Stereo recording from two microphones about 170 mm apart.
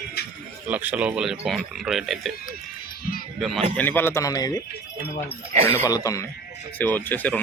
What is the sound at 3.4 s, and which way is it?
Speech, centre (ahead or behind).